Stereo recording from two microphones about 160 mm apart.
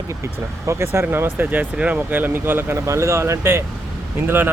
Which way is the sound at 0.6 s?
15° right (ahead or behind).